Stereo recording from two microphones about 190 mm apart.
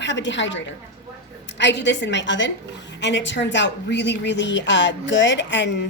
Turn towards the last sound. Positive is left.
turn(degrees=70)  # may be behind; listen again after turning